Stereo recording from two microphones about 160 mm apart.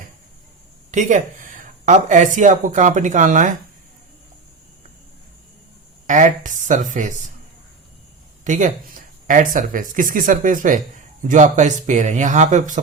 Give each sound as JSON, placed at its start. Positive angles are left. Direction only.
{"t": 0.9, "sound": "speech", "side_deg": -50}
{"t": 6.1, "sound": "speech", "side_deg": -50}
{"t": 8.4, "sound": "speech", "side_deg": -50}